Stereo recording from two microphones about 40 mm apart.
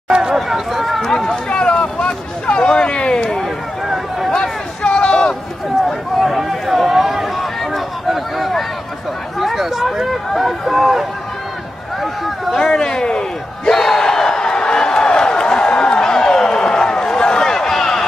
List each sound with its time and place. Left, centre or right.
0.1 s chatter: centre
0.4 s run: centre
1.0 s run: centre
1.3 s a sound: left
3.8 s a sound: centre
4.3 s a sound: left
5.9 s run: centre
9.4 s speech: centre
12.5 s speech: centre
13.7 s crowd: centre